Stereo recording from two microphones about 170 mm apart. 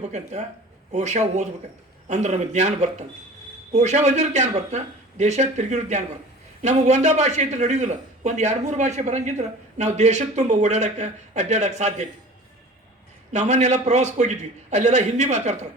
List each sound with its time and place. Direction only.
0.0 s a man's voice: 40° right (ahead or behind)
13.3 s a man's voice: 40° right (ahead or behind)